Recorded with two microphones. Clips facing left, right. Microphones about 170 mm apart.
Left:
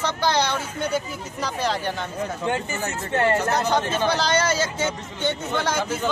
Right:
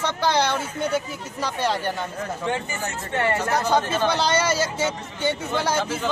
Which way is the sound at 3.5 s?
10° right (ahead or behind).